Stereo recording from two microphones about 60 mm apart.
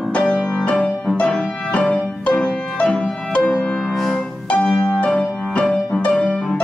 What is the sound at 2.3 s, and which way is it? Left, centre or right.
Music, centre.